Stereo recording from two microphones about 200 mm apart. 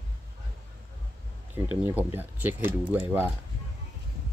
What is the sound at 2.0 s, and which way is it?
Speech, 10° right (ahead or behind).